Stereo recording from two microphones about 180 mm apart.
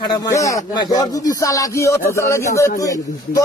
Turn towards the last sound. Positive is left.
turn(degrees=20)  # may be behind; listen again after turning